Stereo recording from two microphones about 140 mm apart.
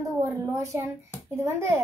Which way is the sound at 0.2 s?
20° right (ahead or behind).